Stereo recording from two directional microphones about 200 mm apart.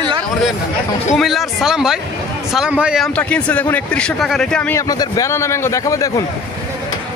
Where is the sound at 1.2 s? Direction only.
Centre (ahead or behind); by 6.3 s 15° left (ahead or behind).